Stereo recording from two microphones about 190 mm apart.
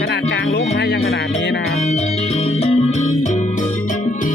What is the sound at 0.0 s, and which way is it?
Speech, 60° left (ahead or behind).